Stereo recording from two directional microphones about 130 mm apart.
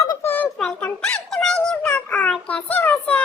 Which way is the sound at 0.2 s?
15° left (ahead or behind).